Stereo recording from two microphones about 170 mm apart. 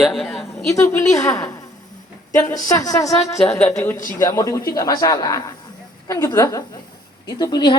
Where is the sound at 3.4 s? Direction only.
5° left (ahead or behind).